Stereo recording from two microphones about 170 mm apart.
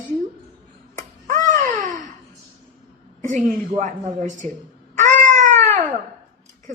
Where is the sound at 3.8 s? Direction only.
50° right (ahead or behind).